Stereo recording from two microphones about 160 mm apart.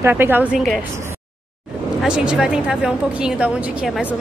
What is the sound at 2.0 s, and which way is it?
A woman's voice, 5° right (ahead or behind).